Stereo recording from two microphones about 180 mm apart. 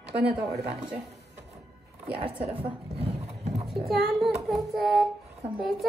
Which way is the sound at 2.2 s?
30° right (ahead or behind).